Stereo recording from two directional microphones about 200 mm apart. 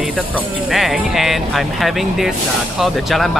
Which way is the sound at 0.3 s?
Centre (ahead or behind).